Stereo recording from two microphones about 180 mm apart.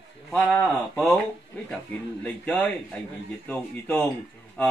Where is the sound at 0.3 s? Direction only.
10° left (ahead or behind).